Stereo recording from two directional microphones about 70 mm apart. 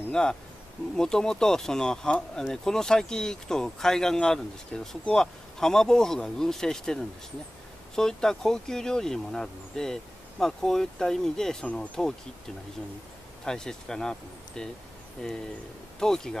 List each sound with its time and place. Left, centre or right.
0.1 s speech: centre
11.6 s speech: centre
13.5 s speech: centre